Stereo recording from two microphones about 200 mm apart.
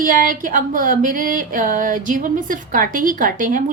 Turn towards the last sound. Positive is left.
turn(degrees=-40)  # may be behind; listen again after turning